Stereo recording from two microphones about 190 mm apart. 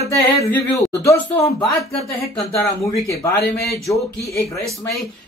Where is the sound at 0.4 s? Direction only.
15° left (ahead or behind).